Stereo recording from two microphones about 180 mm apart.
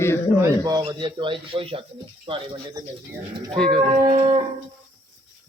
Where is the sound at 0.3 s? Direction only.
20° right (ahead or behind).